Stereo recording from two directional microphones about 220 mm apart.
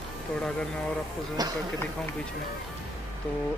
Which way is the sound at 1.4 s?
20° right (ahead or behind).